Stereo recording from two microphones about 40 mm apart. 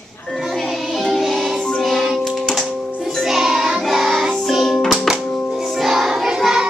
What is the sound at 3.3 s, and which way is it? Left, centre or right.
Music, centre.